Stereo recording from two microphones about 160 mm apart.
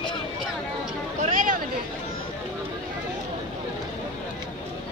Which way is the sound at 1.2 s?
50° right (ahead or behind).